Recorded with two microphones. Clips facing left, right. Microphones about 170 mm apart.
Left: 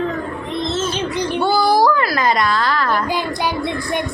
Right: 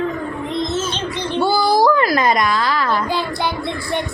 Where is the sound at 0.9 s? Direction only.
15° left (ahead or behind).